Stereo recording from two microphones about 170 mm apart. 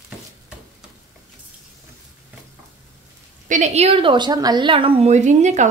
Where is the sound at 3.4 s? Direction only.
45° right (ahead or behind).